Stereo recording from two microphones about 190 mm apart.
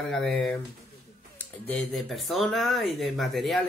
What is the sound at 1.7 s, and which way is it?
Speech, centre (ahead or behind).